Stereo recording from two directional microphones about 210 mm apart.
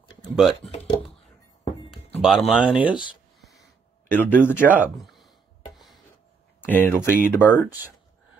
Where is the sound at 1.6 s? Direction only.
30° left (ahead or behind).